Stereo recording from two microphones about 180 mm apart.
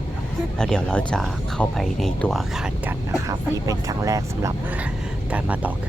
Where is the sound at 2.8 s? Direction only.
20° right (ahead or behind).